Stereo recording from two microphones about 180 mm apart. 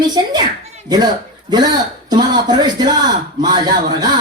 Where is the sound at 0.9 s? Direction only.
20° right (ahead or behind).